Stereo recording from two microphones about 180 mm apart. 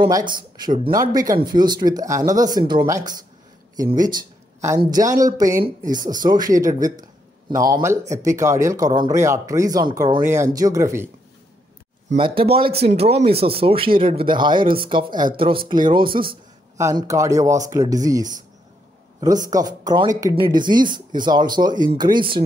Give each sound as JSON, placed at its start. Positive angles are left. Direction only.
{"t": 0.9, "sound": "a man's voice", "side_deg": -20}
{"t": 12.2, "sound": "speech", "side_deg": -30}
{"t": 19.5, "sound": "speech", "side_deg": -20}